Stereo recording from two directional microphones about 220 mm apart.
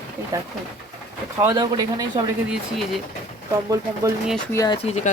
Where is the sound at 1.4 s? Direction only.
15° right (ahead or behind).